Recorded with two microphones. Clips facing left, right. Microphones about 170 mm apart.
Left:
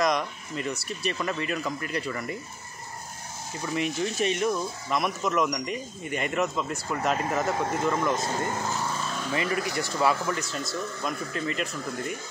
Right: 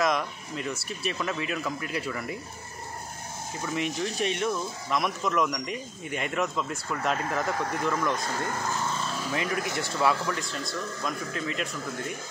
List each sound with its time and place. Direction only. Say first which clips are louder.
0.0 s speech: left 1 dB; centre (ahead or behind)
3.6 s speech: left 2 dB; centre (ahead or behind)
7.5 s speech: left 2 dB; 25° left (ahead or behind)
9.3 s speech: left 2 dB; centre (ahead or behind)